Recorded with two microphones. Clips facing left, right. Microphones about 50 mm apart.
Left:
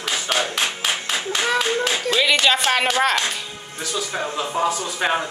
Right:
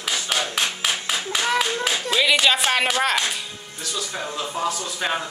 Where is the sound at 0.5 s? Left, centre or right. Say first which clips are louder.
Left 1 dB; centre.